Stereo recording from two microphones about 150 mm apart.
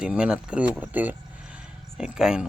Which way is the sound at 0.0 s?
5° right (ahead or behind).